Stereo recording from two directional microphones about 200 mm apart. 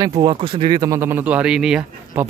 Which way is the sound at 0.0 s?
20° right (ahead or behind).